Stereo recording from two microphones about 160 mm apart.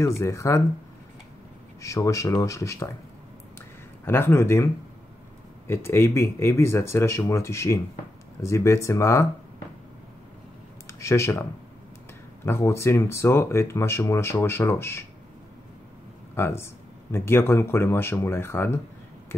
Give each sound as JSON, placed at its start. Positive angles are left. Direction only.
{"t": 0.0, "sound": "speech", "side_deg": 20}
{"t": 1.8, "sound": "speech", "side_deg": 20}
{"t": 3.5, "sound": "a sound", "side_deg": 15}
{"t": 5.7, "sound": "speech", "side_deg": 15}
{"t": 10.9, "sound": "speech", "side_deg": 20}
{"t": 12.4, "sound": "speech", "side_deg": 15}
{"t": 16.3, "sound": "speech", "side_deg": 15}